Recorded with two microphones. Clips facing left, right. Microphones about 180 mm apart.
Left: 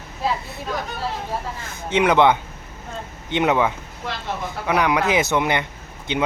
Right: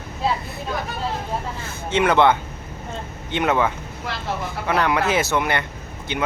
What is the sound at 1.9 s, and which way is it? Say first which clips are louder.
Speech: left 1 dB; 15° left (ahead or behind).